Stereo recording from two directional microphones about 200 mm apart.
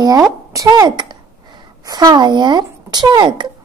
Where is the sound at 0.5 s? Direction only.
20° right (ahead or behind).